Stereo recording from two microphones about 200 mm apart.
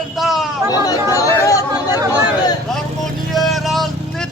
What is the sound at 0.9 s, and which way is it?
Speech, 15° left (ahead or behind).